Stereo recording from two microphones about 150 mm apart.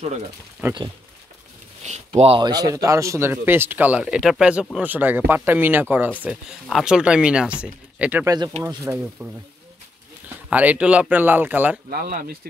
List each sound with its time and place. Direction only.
0.6 s speech: 15° right (ahead or behind)
1.8 s speech: 45° right (ahead or behind); by 9.3 s 15° right (ahead or behind)
10.5 s speech: 10° right (ahead or behind)
11.9 s speech: 75° right (ahead or behind)